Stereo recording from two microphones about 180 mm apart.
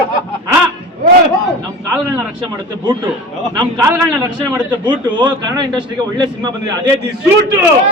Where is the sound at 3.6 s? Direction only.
20° right (ahead or behind).